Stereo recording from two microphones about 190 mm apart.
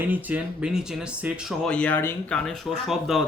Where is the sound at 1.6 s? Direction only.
5° left (ahead or behind).